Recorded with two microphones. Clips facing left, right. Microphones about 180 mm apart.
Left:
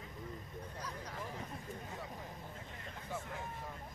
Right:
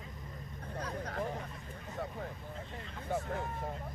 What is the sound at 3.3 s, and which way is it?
Vehicle, 55° right (ahead or behind).